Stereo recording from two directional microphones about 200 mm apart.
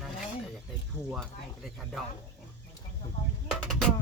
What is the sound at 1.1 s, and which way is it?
Speech, centre (ahead or behind).